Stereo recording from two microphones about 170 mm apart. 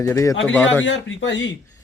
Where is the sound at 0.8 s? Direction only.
90° left.